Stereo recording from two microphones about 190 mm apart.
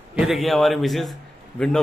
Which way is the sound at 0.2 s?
Centre (ahead or behind).